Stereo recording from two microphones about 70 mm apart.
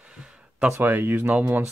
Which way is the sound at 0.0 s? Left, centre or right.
Centre.